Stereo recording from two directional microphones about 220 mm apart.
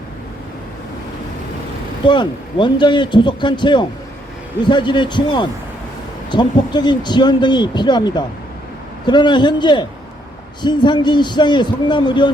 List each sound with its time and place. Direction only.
2.0 s speech: 20° left (ahead or behind)